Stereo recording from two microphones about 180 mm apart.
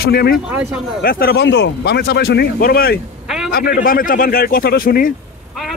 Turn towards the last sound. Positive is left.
turn(degrees=55)  # may be behind; listen again after turning